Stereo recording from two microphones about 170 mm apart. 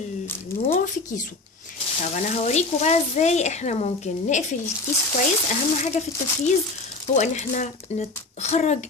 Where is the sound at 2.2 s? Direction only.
40° left (ahead or behind).